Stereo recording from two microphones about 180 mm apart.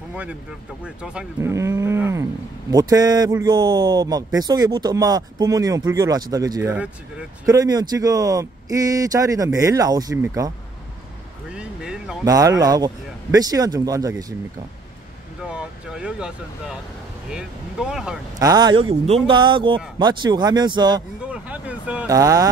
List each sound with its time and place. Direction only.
0.1 s speech: 5° right (ahead or behind)
1.5 s a sound: 15° right (ahead or behind)
2.7 s speech: 20° right (ahead or behind)
7.4 s speech: 20° right (ahead or behind)
11.5 s a sound: 5° right (ahead or behind)
12.3 s speech: 20° right (ahead or behind)
15.4 s speech: 5° right (ahead or behind)
18.4 s speech: 25° right (ahead or behind)
21.3 s vehicle: 5° right (ahead or behind)
22.0 s speech: 20° right (ahead or behind)